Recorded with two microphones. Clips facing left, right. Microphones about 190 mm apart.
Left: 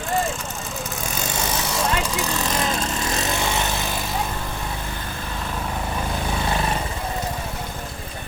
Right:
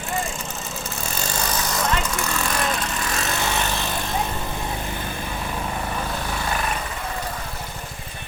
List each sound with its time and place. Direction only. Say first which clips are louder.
1.1 s vehicle: even; 5° left (ahead or behind); by 3.2 s 20° left (ahead or behind)